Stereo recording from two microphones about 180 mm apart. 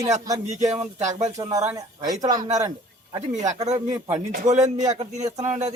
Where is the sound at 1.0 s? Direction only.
40° right (ahead or behind).